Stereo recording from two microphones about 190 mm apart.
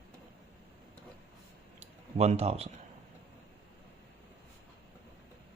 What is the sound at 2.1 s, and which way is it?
Speech, 35° right (ahead or behind).